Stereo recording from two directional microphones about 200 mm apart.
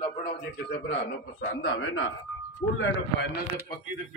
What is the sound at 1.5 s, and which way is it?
Speech, 65° left (ahead or behind).